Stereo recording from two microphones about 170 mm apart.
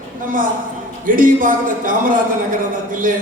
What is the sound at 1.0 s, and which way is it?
A man's voice, 55° right (ahead or behind).